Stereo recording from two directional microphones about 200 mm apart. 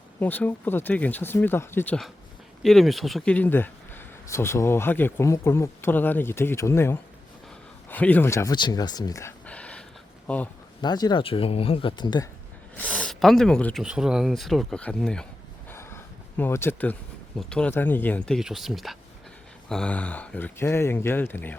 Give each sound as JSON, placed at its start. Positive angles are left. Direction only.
{"t": 0.2, "sound": "speech", "side_deg": 10}
{"t": 10.8, "sound": "speech", "side_deg": 20}
{"t": 12.7, "sound": "speech", "side_deg": 5}